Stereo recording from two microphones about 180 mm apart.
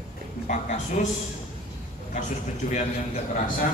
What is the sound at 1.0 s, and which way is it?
Speech, 40° left (ahead or behind).